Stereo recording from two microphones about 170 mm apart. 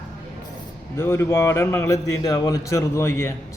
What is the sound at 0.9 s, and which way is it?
Speech, 15° left (ahead or behind).